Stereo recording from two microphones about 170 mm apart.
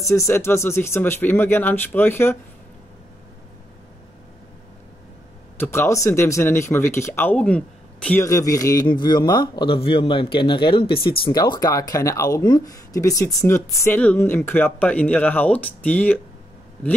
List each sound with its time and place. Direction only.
0.0 s speech: 20° left (ahead or behind)
5.6 s speech: 15° left (ahead or behind)